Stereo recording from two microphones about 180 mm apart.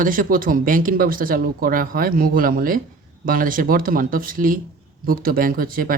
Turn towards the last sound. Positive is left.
turn(degrees=-50)  # may be behind; listen again after turning